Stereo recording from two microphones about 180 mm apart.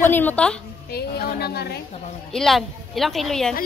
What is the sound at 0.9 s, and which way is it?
Speech, 60° left (ahead or behind).